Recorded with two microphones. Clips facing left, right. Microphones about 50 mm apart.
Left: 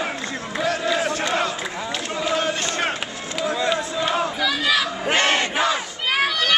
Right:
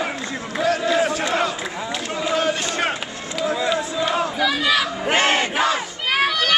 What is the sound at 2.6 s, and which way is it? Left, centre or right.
Crowd, centre.